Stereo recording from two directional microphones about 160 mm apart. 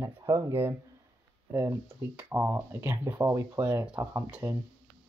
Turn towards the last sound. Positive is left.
turn(degrees=-15)  # may be behind; listen again after turning